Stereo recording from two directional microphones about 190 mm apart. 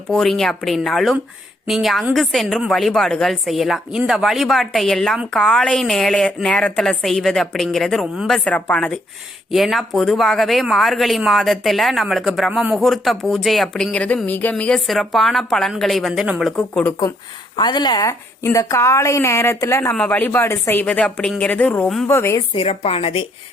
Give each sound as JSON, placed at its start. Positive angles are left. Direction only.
{"t": 0.1, "sound": "speech", "side_deg": 0}
{"t": 17.6, "sound": "a woman's voice", "side_deg": 20}
{"t": 22.5, "sound": "a woman's voice", "side_deg": 30}